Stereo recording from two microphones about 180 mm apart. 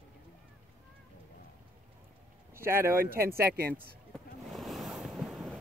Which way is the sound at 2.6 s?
15° right (ahead or behind).